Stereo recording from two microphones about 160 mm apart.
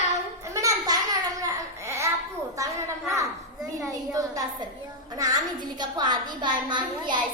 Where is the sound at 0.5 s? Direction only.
20° right (ahead or behind).